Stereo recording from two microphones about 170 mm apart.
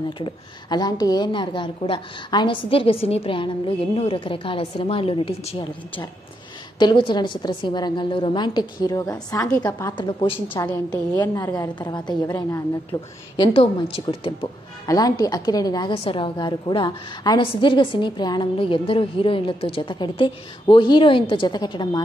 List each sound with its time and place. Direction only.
0.2 s a woman's voice: 25° left (ahead or behind)
10.5 s a woman's voice: 10° left (ahead or behind)
13.5 s a woman's voice: 35° left (ahead or behind)
14.9 s a woman's voice: 20° left (ahead or behind)
15.9 s a woman's voice: 30° left (ahead or behind)